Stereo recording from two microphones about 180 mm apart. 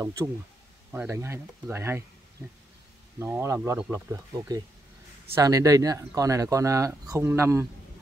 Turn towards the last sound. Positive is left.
turn(degrees=-15)  # may be behind; listen again after turning